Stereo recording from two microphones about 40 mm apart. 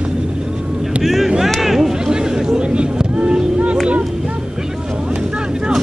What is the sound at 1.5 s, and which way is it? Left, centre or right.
Chatter, centre.